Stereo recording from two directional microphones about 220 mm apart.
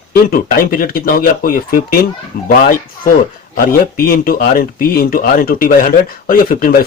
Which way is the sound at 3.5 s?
40° left (ahead or behind).